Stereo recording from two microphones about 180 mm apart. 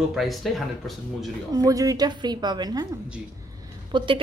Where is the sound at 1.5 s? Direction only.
20° right (ahead or behind).